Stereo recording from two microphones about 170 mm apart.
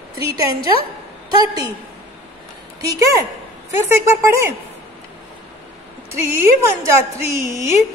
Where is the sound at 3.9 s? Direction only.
15° right (ahead or behind).